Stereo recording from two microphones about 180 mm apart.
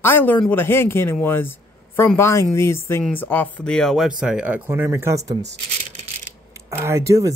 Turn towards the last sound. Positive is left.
turn(degrees=-15)  # may be behind; listen again after turning